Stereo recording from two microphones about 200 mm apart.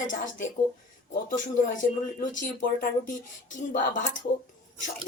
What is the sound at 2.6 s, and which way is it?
Speech, 40° left (ahead or behind).